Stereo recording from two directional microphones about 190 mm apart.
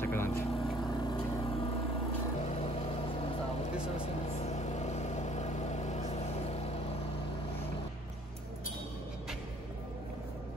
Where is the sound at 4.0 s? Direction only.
35° left (ahead or behind).